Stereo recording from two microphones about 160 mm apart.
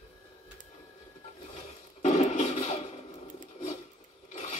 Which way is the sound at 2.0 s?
45° left (ahead or behind).